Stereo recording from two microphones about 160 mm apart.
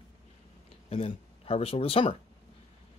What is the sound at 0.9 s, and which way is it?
Speech, 35° left (ahead or behind).